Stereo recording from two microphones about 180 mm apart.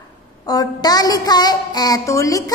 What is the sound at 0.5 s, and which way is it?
A woman's voice, 20° left (ahead or behind).